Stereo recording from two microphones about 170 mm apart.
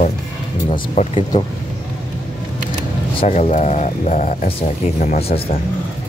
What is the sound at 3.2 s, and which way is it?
Speech, 40° left (ahead or behind).